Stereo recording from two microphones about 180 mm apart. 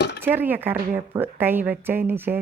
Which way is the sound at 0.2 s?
10° right (ahead or behind).